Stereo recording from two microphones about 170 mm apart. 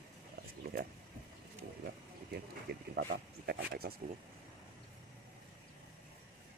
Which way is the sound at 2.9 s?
75° right (ahead or behind).